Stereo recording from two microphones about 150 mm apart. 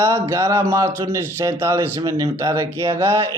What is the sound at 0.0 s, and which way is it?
A man's voice, 20° right (ahead or behind).